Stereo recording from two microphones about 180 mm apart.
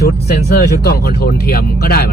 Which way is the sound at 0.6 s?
60° left (ahead or behind).